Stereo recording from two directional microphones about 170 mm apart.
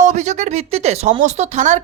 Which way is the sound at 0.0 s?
45° right (ahead or behind).